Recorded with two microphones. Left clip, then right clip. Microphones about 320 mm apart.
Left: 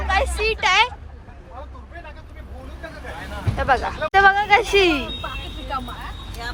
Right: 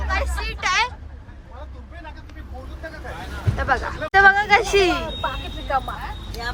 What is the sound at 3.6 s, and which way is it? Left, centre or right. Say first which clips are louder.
Speech: left 3 dB; centre.